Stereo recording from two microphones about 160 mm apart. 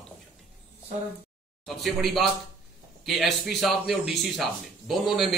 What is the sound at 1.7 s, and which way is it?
Speech, centre (ahead or behind).